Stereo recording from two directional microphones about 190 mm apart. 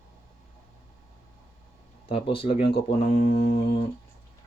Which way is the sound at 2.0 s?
30° left (ahead or behind).